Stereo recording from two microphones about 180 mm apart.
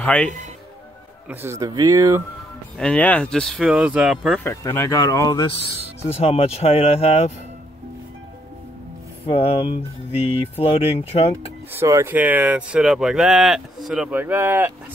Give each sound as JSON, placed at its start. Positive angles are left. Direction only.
{"t": 0.0, "sound": "speech", "side_deg": 5}
{"t": 1.3, "sound": "speech", "side_deg": -15}
{"t": 2.8, "sound": "speech", "side_deg": 5}
{"t": 4.4, "sound": "speech", "side_deg": 15}
{"t": 6.1, "sound": "speech", "side_deg": 35}
{"t": 9.3, "sound": "speech", "side_deg": 30}
{"t": 11.7, "sound": "speech", "side_deg": -15}